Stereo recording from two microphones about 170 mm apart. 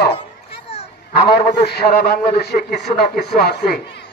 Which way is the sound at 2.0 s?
70° left (ahead or behind).